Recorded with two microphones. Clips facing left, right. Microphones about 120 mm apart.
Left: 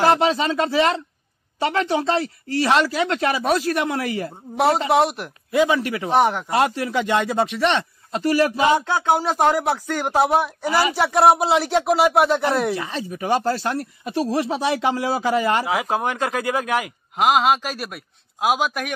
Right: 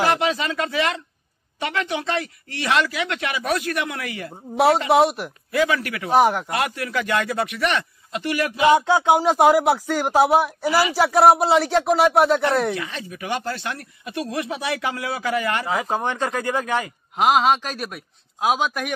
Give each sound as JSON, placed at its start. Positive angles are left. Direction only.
{"t": 0.0, "sound": "speech", "side_deg": 30}
{"t": 4.3, "sound": "speech", "side_deg": 0}
{"t": 5.5, "sound": "a man's voice", "side_deg": 25}
{"t": 6.1, "sound": "speech", "side_deg": -5}
{"t": 6.5, "sound": "a man's voice", "side_deg": 30}
{"t": 8.7, "sound": "speech", "side_deg": -15}
{"t": 12.7, "sound": "speech", "side_deg": 35}
{"t": 15.6, "sound": "speech", "side_deg": 5}